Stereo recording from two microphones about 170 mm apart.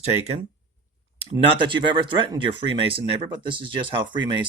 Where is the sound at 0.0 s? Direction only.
40° right (ahead or behind).